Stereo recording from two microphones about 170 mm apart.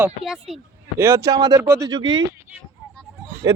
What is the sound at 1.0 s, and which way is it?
Speech, 15° right (ahead or behind).